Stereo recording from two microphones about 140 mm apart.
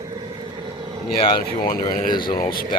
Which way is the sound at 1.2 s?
40° left (ahead or behind).